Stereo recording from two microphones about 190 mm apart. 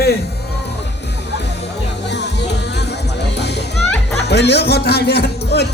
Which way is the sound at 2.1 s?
65° left (ahead or behind).